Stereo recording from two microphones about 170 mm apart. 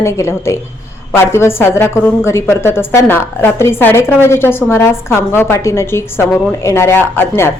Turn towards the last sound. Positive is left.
turn(degrees=15)  # may be behind; listen again after turning